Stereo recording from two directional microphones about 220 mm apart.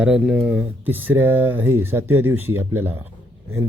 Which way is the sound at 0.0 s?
5° right (ahead or behind).